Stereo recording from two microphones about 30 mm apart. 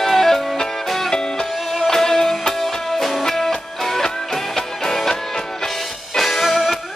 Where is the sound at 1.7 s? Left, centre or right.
Centre.